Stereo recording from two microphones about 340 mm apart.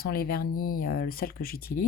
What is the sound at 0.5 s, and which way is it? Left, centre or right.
Speech, left.